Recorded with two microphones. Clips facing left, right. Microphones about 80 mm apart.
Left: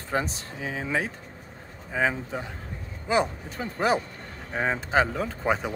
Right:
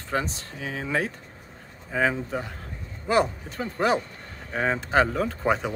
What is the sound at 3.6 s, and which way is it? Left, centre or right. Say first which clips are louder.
Speech: right 1 dB; centre.